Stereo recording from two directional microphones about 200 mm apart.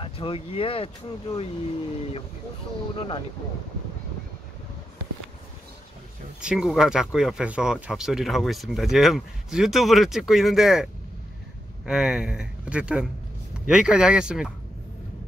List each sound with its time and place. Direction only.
0.0 s speech: 25° left (ahead or behind)
3.0 s speech: 25° left (ahead or behind)
6.4 s speech: centre (ahead or behind)